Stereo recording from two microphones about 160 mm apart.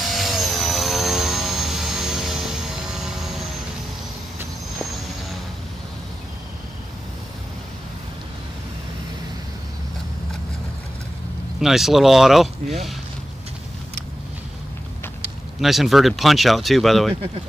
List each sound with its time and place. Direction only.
0.0 s vehicle: centre (ahead or behind)
11.6 s speech: centre (ahead or behind)
15.6 s speech: centre (ahead or behind)